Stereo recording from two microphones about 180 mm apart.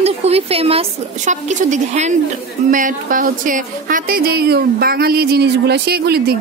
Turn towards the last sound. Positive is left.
turn(degrees=-60)  # may be behind; listen again after turning